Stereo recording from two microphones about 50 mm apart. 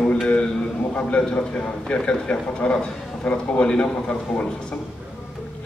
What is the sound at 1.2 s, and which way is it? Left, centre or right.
A man's voice, centre.